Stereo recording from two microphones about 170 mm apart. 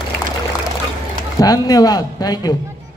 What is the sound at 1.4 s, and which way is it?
A man's voice, 20° left (ahead or behind).